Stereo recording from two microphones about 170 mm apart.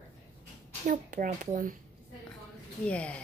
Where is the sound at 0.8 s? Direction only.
50° right (ahead or behind).